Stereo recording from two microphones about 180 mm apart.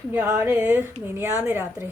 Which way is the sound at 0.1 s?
15° right (ahead or behind).